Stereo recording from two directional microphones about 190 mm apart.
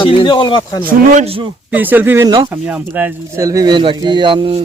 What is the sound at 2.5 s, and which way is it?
Speech, 10° right (ahead or behind).